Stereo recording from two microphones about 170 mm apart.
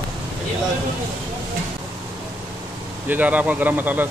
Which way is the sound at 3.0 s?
10° right (ahead or behind).